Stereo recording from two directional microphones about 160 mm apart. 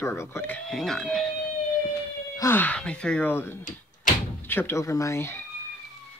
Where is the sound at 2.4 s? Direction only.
15° left (ahead or behind).